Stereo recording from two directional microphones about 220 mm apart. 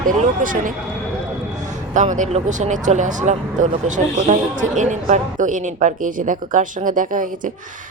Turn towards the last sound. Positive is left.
turn(degrees=-35)  # may be behind; listen again after turning